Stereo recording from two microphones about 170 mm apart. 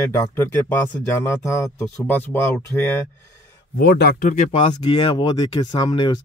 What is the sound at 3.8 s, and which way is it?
Speech, 80° left.